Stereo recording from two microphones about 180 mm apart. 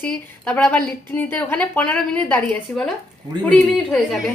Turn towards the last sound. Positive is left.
turn(degrees=5)  # may be behind; listen again after turning